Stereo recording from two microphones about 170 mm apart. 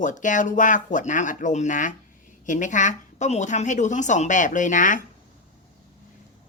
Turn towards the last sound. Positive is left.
turn(degrees=50)  # may be behind; listen again after turning